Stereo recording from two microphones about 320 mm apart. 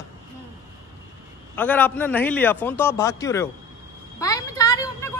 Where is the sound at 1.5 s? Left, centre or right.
Centre.